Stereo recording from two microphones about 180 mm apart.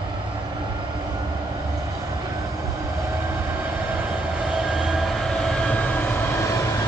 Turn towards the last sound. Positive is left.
turn(degrees=10)  # may be behind; listen again after turning